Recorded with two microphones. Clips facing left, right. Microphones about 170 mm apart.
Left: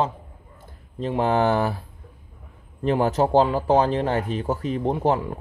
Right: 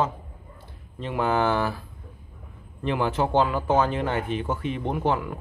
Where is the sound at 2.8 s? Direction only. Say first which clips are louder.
Left 4 dB; 40° left (ahead or behind).